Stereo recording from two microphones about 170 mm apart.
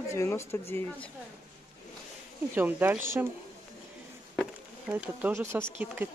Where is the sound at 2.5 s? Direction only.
10° right (ahead or behind).